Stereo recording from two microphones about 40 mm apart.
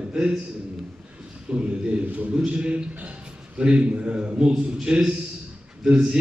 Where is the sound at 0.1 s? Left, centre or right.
Centre.